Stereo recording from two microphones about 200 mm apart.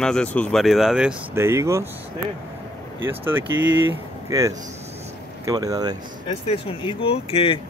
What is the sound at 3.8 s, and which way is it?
Speech, 15° right (ahead or behind).